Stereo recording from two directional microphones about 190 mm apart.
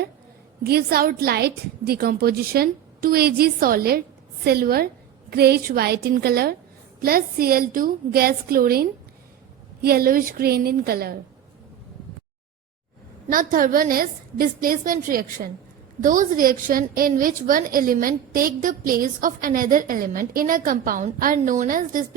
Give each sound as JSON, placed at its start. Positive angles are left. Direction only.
{"t": 0.6, "sound": "a woman's voice", "side_deg": -55}
{"t": 13.3, "sound": "a woman's voice", "side_deg": -45}